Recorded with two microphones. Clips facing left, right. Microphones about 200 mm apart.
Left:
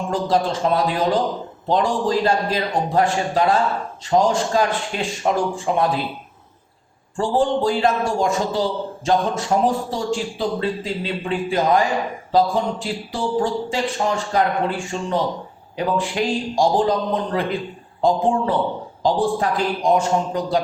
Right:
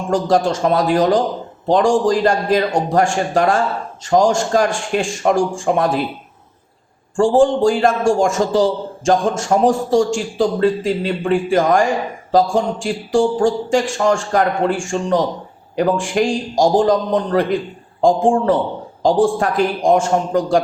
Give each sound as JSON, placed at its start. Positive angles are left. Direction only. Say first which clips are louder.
{"t": 0.1, "sound": "a man's voice", "louder": "right 5 dB", "side_deg": -45}
{"t": 7.2, "sound": "a man's voice", "louder": "right 6 dB", "side_deg": -45}
{"t": 18.0, "sound": "a man's voice", "louder": "right 4 dB", "side_deg": -50}